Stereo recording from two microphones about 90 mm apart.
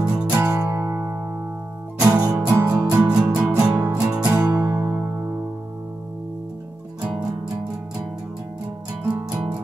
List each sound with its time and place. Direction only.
0.0 s music: 15° right (ahead or behind)
0.4 s music: 30° right (ahead or behind)
2.9 s music: 10° right (ahead or behind)
4.3 s music: 25° right (ahead or behind)